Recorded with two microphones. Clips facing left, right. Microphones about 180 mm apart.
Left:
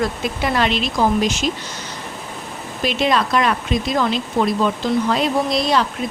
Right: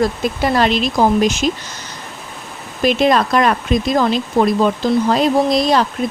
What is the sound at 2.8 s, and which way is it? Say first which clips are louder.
Speech: right 5 dB; 45° right (ahead or behind).